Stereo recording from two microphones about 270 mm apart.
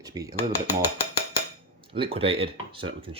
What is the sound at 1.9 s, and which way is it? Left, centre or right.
Speech, centre.